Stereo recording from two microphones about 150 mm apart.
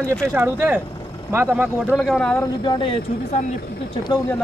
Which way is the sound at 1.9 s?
Centre (ahead or behind).